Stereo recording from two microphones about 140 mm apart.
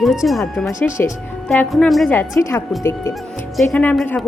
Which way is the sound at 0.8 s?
15° left (ahead or behind).